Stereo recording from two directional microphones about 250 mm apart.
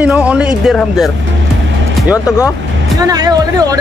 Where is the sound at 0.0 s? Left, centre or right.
Centre.